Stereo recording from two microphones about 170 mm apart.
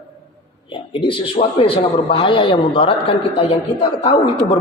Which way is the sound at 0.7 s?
30° left (ahead or behind).